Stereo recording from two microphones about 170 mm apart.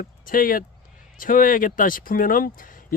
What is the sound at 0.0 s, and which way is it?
Speech, 55° left (ahead or behind).